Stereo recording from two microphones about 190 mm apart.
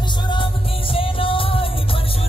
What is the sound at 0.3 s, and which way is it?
Music, 25° left (ahead or behind).